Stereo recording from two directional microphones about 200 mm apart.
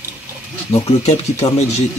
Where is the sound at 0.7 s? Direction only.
30° left (ahead or behind).